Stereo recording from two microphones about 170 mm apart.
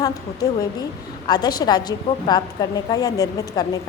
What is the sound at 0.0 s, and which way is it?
A woman's voice, 20° left (ahead or behind).